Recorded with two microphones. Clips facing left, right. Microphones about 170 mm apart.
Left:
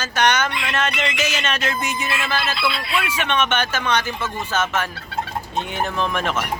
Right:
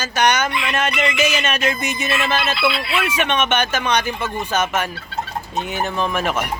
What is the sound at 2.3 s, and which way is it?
Fowl, 20° right (ahead or behind).